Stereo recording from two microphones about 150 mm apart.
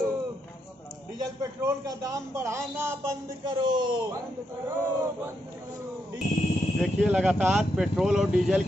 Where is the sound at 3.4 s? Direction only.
30° right (ahead or behind).